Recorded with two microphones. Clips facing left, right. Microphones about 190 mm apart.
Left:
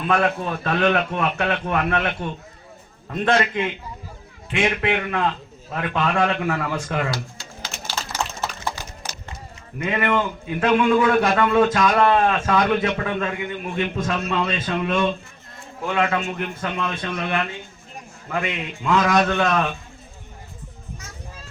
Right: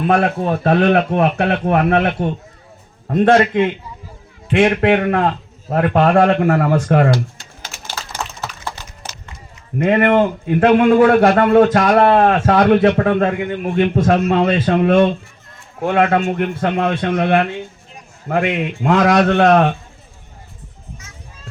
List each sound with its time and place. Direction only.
0.2 s a man's voice: 50° right (ahead or behind)
9.7 s a man's voice: 55° right (ahead or behind)